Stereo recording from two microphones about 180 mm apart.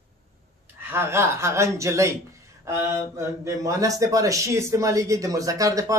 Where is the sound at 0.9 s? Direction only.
15° right (ahead or behind).